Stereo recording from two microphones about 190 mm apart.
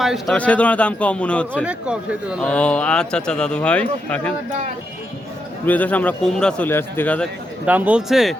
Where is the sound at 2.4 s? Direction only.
5° left (ahead or behind).